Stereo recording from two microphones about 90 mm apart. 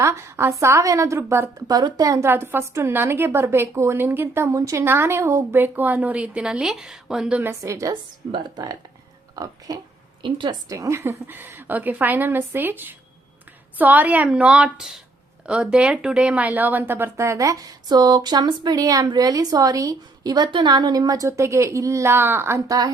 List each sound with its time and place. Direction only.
0.0 s a woman's voice: 30° right (ahead or behind)
1.5 s a woman's voice: 50° right (ahead or behind)
4.9 s a woman's voice: 25° right (ahead or behind); by 7.4 s 10° right (ahead or behind)
7.4 s a woman's voice: 35° right (ahead or behind)
8.4 s speech: 50° right (ahead or behind)
10.2 s a woman's voice: 65° right (ahead or behind)
10.7 s a woman's voice: 35° right (ahead or behind)
22.6 s a woman's voice: 40° right (ahead or behind)